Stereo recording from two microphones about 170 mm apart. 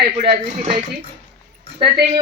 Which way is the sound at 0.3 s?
35° right (ahead or behind).